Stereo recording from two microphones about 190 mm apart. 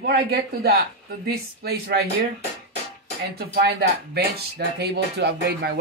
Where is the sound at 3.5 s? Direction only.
55° right (ahead or behind).